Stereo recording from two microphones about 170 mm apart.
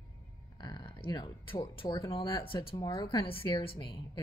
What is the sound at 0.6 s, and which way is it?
Speech, 25° left (ahead or behind).